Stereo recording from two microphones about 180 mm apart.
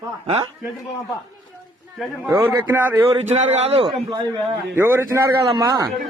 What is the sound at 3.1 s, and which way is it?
Speech, 30° right (ahead or behind).